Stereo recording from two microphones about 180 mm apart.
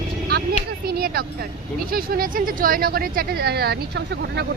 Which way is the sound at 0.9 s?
55° right (ahead or behind).